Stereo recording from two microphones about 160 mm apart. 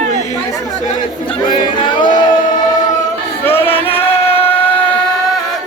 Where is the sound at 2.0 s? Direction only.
30° left (ahead or behind).